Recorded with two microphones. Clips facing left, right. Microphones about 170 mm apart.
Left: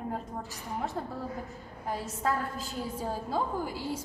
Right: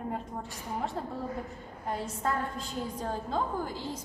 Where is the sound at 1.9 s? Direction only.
5° left (ahead or behind).